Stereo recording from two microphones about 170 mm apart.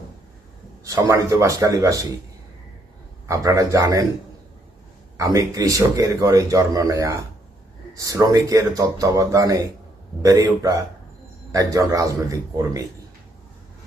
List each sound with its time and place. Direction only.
0.9 s a man's voice: 15° right (ahead or behind)
3.2 s a man's voice: 20° right (ahead or behind)
5.1 s a man's voice: 20° right (ahead or behind)